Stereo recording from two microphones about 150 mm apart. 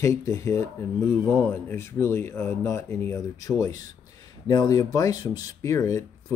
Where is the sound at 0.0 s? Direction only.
20° left (ahead or behind).